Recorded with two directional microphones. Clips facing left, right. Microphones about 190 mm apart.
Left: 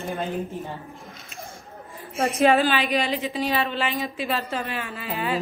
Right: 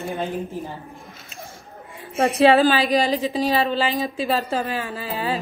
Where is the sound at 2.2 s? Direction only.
35° right (ahead or behind).